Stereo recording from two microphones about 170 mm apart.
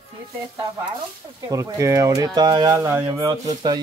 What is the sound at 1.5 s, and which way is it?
Speech, 20° right (ahead or behind).